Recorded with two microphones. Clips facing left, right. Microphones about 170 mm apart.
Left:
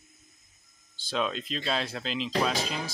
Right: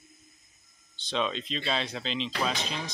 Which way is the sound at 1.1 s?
5° left (ahead or behind).